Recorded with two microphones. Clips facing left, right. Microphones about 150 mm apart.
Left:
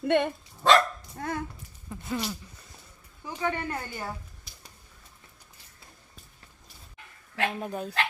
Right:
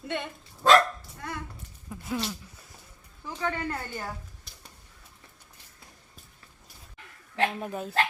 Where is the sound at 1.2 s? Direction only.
45° left (ahead or behind).